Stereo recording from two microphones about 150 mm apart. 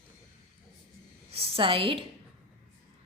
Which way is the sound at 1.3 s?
40° right (ahead or behind).